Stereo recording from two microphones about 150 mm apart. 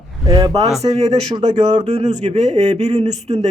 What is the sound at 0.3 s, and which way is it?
Speech, 25° right (ahead or behind).